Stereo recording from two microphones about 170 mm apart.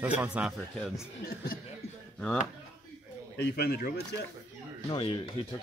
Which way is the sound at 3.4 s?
70° left (ahead or behind).